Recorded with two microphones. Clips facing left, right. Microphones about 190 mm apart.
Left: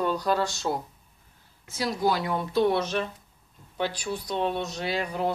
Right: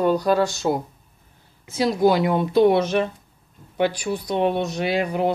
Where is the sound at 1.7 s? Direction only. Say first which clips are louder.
Right 8 dB; 20° right (ahead or behind).